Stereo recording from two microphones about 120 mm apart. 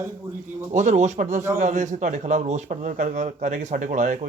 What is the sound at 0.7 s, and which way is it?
Speech, 80° right.